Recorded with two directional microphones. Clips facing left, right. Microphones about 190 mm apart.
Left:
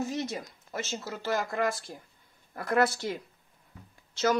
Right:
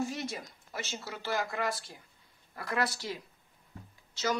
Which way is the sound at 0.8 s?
45° left (ahead or behind).